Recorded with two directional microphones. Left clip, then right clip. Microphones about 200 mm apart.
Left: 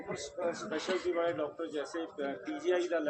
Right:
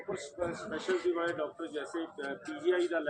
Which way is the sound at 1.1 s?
55° left (ahead or behind).